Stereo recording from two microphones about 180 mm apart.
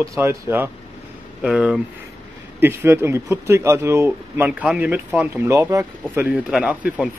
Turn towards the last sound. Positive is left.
turn(degrees=-5)  # may be behind; listen again after turning